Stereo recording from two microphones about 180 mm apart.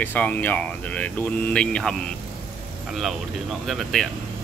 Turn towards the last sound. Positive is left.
turn(degrees=0)  # may be behind; listen again after turning